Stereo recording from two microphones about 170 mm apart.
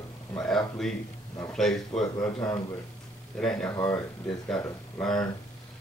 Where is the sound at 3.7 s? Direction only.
20° left (ahead or behind).